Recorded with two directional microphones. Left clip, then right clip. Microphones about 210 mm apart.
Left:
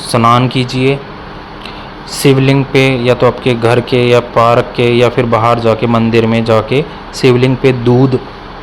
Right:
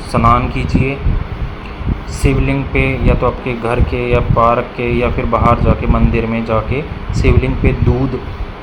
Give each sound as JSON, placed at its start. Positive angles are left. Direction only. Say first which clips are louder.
{"t": 0.1, "sound": "speech", "louder": "left 3 dB", "side_deg": 45}
{"t": 2.1, "sound": "speech", "louder": "left 8 dB", "side_deg": 45}